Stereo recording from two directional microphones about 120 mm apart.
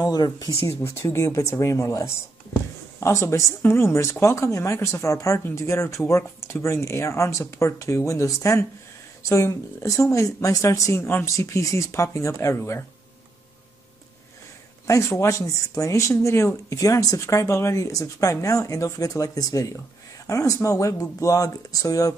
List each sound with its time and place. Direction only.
0.0 s speech: 35° left (ahead or behind)
14.9 s speech: 25° left (ahead or behind)